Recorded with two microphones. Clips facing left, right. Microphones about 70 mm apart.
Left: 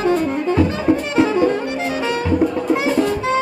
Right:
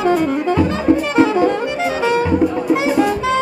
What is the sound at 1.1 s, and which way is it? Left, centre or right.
Music, right.